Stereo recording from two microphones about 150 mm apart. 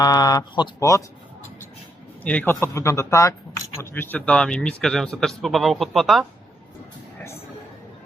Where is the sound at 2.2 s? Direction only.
10° left (ahead or behind).